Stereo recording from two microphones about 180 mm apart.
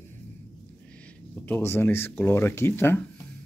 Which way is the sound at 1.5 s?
15° left (ahead or behind).